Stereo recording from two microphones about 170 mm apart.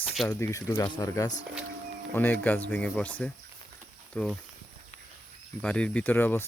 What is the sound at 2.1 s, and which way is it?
Speech, 10° left (ahead or behind).